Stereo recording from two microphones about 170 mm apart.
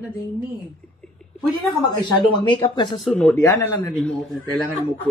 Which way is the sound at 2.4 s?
25° left (ahead or behind).